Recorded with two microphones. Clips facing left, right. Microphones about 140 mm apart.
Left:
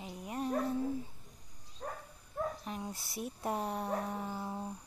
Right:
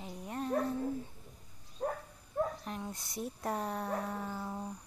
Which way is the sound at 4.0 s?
15° left (ahead or behind).